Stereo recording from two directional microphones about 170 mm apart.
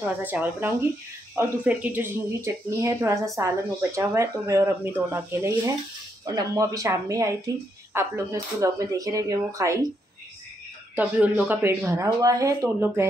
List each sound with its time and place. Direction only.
0.2 s speech: 10° right (ahead or behind)
11.0 s speech: 10° right (ahead or behind)